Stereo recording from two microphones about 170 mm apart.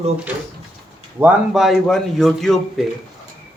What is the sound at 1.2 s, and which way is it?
A man's voice, centre (ahead or behind).